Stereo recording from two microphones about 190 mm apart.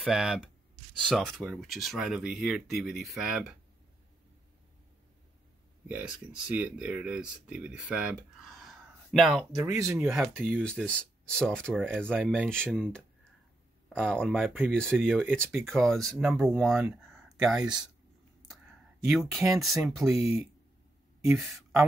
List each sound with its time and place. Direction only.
0.0 s speech: centre (ahead or behind)
5.9 s speech: 5° right (ahead or behind)
9.6 s speech: 15° right (ahead or behind)
10.1 s speech: centre (ahead or behind)
18.5 s a sound: centre (ahead or behind)
19.5 s speech: centre (ahead or behind)
20.0 s speech: 15° right (ahead or behind)
21.3 s speech: centre (ahead or behind)